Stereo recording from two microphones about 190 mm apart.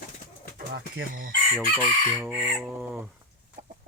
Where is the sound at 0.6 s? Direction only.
50° right (ahead or behind).